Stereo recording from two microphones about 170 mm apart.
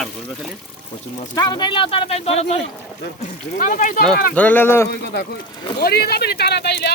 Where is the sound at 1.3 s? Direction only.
25° left (ahead or behind); by 4.0 s 45° left (ahead or behind).